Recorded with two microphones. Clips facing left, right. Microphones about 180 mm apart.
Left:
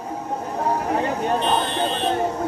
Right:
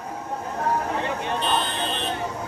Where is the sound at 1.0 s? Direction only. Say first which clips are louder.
Left 5 dB; 40° left (ahead or behind).